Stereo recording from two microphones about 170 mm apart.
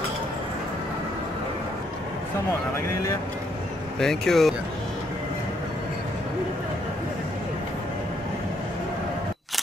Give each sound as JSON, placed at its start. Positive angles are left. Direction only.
{"t": 4.0, "sound": "speech", "side_deg": 0}